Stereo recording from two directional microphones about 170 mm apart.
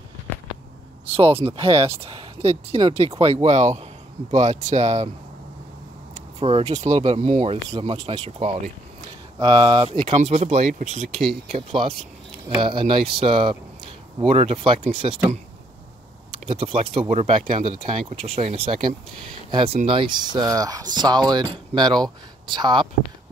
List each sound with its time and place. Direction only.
1.0 s speech: 35° right (ahead or behind)
6.4 s speech: 40° right (ahead or behind); by 9.8 s 25° right (ahead or behind)
10.1 s speech: 40° right (ahead or behind)
12.4 s speech: 30° right (ahead or behind)
16.4 s speech: 35° right (ahead or behind)